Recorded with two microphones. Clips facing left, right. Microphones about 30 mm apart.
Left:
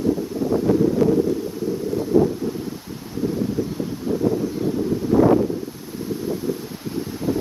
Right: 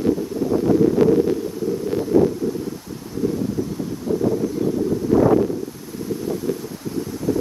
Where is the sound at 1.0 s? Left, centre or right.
Right.